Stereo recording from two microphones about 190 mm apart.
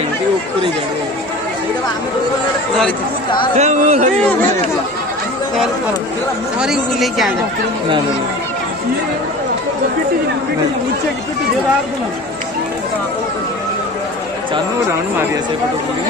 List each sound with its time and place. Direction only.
3.5 s speech: 40° right (ahead or behind)
4.2 s speech: 10° left (ahead or behind)
6.6 s speech: centre (ahead or behind)